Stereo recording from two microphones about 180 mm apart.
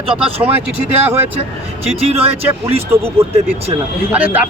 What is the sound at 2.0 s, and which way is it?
Speech, 35° right (ahead or behind).